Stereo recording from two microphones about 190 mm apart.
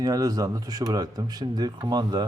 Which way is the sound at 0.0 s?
20° right (ahead or behind).